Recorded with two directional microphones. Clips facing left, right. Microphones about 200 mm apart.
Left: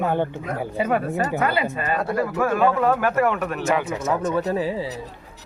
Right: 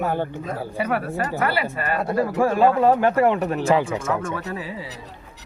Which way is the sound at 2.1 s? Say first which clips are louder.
Right 3 dB; 30° right (ahead or behind).